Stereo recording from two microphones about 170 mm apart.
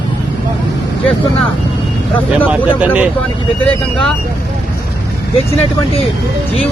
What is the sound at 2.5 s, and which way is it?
Speech, 5° right (ahead or behind).